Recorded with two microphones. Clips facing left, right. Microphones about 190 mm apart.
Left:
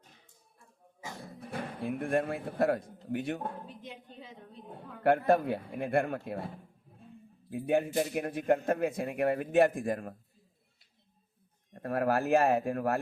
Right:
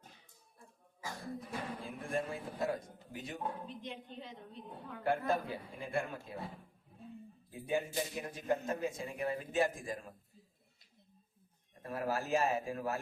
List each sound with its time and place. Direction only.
1.4 s speech: 60° left (ahead or behind)
3.7 s a woman's voice: 5° left (ahead or behind)
5.0 s speech: 60° left (ahead or behind)
7.5 s speech: 60° left (ahead or behind)
11.7 s speech: 60° left (ahead or behind)